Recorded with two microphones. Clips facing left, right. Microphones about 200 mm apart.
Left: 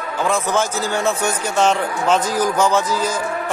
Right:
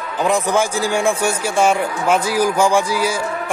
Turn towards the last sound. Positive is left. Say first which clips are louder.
# right 2 dB
turn(degrees=-10)  # may be behind; listen again after turning